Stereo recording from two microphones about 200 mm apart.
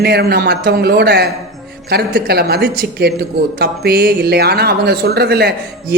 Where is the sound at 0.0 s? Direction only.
50° right (ahead or behind).